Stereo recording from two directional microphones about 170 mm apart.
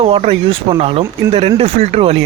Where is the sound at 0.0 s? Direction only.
35° right (ahead or behind).